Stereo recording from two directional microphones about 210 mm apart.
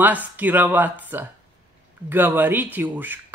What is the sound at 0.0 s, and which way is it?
A man's voice, 10° right (ahead or behind).